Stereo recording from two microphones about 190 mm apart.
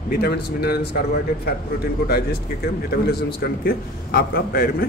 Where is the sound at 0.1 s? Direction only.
55° left (ahead or behind).